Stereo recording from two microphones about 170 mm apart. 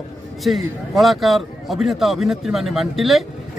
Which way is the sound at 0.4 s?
Centre (ahead or behind).